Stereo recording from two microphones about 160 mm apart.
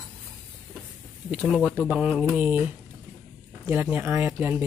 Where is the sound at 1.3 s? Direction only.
5° right (ahead or behind).